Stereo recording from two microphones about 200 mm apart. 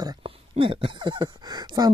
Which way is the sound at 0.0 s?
25° right (ahead or behind).